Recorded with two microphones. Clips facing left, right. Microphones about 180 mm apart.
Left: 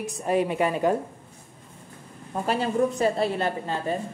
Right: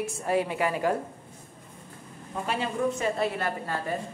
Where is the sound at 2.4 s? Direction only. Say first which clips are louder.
Left 4 dB; 40° left (ahead or behind).